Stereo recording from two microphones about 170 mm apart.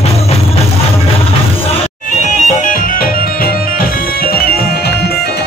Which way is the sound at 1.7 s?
45° left (ahead or behind).